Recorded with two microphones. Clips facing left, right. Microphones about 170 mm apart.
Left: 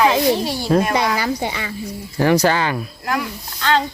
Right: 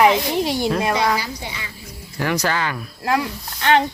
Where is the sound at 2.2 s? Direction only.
30° left (ahead or behind).